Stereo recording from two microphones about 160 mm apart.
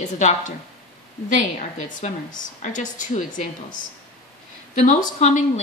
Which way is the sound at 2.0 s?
50° left (ahead or behind).